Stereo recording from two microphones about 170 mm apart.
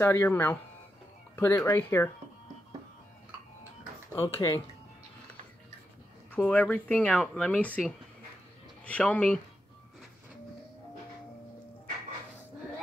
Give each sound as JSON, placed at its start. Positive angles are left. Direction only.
{"t": 0.0, "sound": "speech", "side_deg": 15}
{"t": 4.2, "sound": "speech", "side_deg": 20}
{"t": 6.3, "sound": "speech", "side_deg": 5}